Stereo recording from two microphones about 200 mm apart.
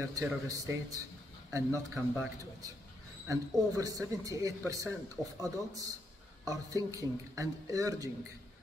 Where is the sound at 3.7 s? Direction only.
15° right (ahead or behind).